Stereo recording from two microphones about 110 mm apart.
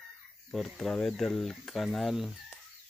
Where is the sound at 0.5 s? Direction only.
5° left (ahead or behind).